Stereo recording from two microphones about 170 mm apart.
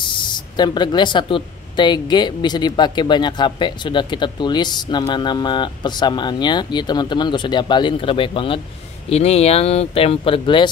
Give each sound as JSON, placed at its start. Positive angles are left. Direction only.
{"t": 0.0, "sound": "speech", "side_deg": 25}